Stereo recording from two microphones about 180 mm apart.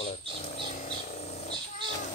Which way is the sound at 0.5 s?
35° left (ahead or behind).